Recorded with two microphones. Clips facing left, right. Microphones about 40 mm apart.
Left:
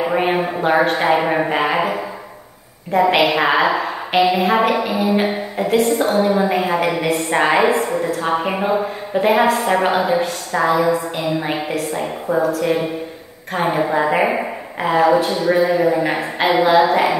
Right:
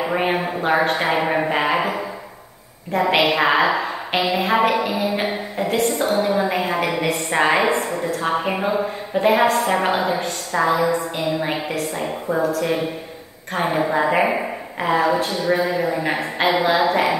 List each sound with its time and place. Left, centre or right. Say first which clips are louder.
0.0 s a woman's voice: left 3 dB; centre